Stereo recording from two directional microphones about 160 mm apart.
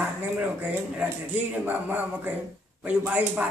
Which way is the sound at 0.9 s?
10° right (ahead or behind).